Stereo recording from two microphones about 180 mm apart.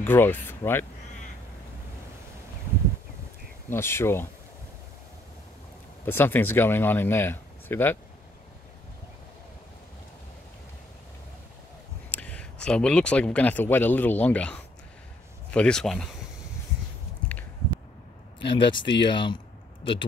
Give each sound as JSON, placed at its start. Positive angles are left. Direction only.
{"t": 0.0, "sound": "speech", "side_deg": 10}
{"t": 3.7, "sound": "speech", "side_deg": 15}
{"t": 6.0, "sound": "speech", "side_deg": 10}
{"t": 12.1, "sound": "speech", "side_deg": 10}
{"t": 18.4, "sound": "speech", "side_deg": 25}